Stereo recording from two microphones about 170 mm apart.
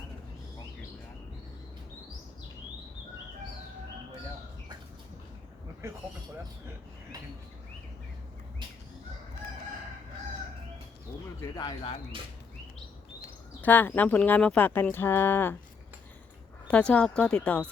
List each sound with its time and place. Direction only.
11.3 s speech: 20° left (ahead or behind)
13.6 s speech: 10° left (ahead or behind)
16.6 s speech: 5° left (ahead or behind)